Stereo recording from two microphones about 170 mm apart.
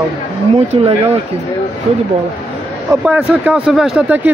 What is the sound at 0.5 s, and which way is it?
Speech, 35° right (ahead or behind).